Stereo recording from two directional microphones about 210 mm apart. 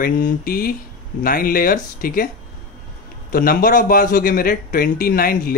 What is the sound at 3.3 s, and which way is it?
A man's voice, 45° left (ahead or behind).